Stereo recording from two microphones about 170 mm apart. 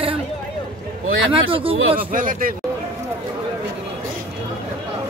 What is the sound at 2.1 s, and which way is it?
Speech, 55° right (ahead or behind).